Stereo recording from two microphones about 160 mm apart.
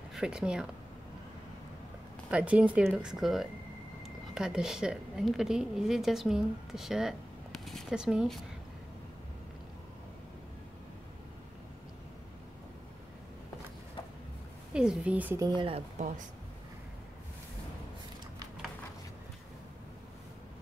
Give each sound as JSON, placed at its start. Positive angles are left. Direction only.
{"t": 0.1, "sound": "speech", "side_deg": -5}
{"t": 2.3, "sound": "a woman's voice", "side_deg": -10}
{"t": 14.7, "sound": "speech", "side_deg": -5}
{"t": 15.4, "sound": "speech", "side_deg": -30}